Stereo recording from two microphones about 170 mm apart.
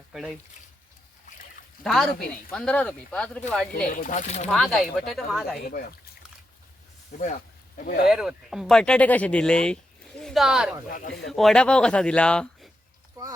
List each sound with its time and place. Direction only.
0.1 s speech: 5° right (ahead or behind)
1.8 s speech: centre (ahead or behind)
3.8 s speech: 50° left (ahead or behind)
4.5 s speech: centre (ahead or behind)
5.6 s speech: 60° left (ahead or behind)
7.1 s speech: 50° left (ahead or behind)
8.0 s speech: centre (ahead or behind)
10.8 s speech: 55° left (ahead or behind)
11.1 s speech: centre (ahead or behind)